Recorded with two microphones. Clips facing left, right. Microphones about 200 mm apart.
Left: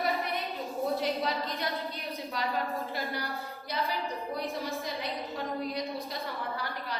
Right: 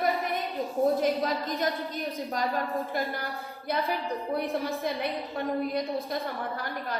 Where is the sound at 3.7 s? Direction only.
55° right (ahead or behind).